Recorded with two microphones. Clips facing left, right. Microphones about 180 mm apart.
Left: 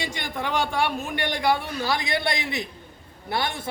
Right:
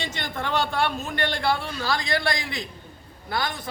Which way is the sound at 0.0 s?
10° left (ahead or behind).